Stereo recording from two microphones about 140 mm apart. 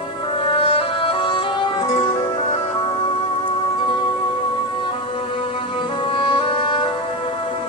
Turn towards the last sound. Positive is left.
turn(degrees=40)  # may be behind; listen again after turning